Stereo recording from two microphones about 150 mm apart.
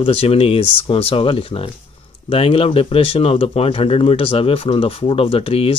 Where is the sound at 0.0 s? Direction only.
40° left (ahead or behind).